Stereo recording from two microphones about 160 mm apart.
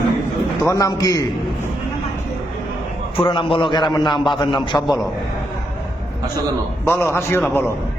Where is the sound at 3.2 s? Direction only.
30° left (ahead or behind).